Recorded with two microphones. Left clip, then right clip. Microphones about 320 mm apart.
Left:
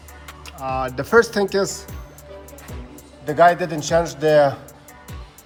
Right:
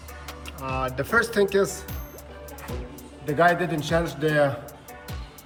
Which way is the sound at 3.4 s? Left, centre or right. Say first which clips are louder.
Left 6 dB; centre.